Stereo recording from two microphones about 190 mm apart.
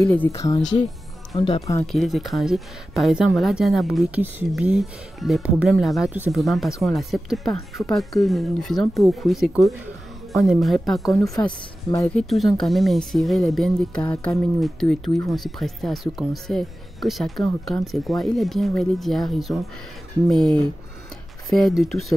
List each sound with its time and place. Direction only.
0.0 s speech: 10° left (ahead or behind)
1.3 s speech: 30° left (ahead or behind)
1.9 s speech: centre (ahead or behind)